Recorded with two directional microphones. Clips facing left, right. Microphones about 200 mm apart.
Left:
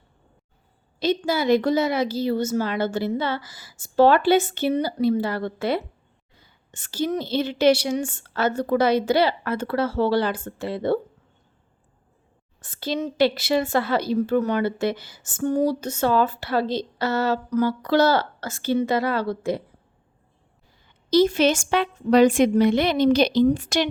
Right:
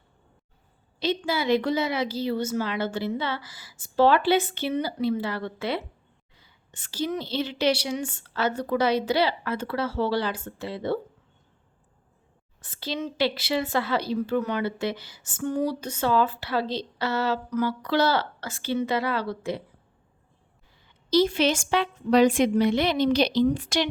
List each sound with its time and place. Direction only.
0.9 s a woman's voice: 45° left (ahead or behind)
12.6 s a woman's voice: 50° left (ahead or behind)
21.1 s a woman's voice: 45° left (ahead or behind)